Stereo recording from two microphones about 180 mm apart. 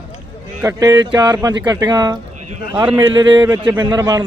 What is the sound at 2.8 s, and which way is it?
A man's voice, 10° right (ahead or behind).